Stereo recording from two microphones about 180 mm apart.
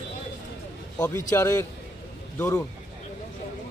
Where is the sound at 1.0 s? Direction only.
15° left (ahead or behind).